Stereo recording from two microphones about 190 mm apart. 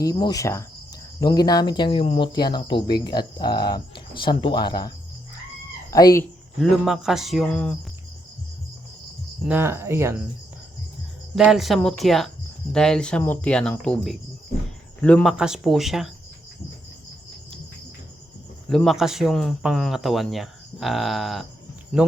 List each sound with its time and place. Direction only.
0.0 s speech: 20° left (ahead or behind)
6.6 s speech: centre (ahead or behind)
9.5 s speech: 10° right (ahead or behind)
11.3 s speech: 5° right (ahead or behind)
18.7 s speech: centre (ahead or behind)